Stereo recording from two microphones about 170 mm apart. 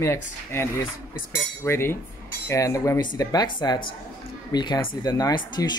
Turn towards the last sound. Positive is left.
turn(degrees=25)  # may be behind; listen again after turning